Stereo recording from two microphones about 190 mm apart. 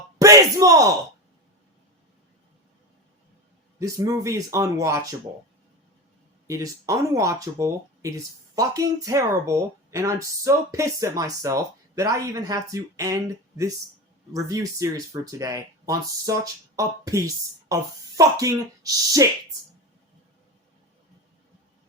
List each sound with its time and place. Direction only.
0.2 s a sound: 15° right (ahead or behind)
3.8 s speech: 15° right (ahead or behind)
6.5 s speech: 15° right (ahead or behind)
14.3 s speech: 15° right (ahead or behind)